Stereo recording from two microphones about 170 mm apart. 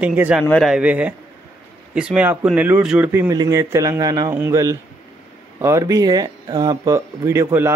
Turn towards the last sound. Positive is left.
turn(degrees=-15)  # may be behind; listen again after turning